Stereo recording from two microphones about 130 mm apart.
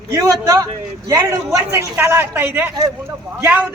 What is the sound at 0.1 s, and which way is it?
A man's voice, 25° right (ahead or behind).